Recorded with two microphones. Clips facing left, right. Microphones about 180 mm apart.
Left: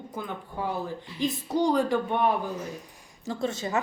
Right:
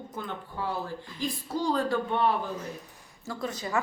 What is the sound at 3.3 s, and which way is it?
Speech, 25° left (ahead or behind).